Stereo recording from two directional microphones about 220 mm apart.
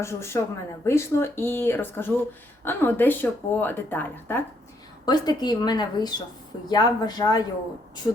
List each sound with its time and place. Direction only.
0.0 s speech: 10° left (ahead or behind)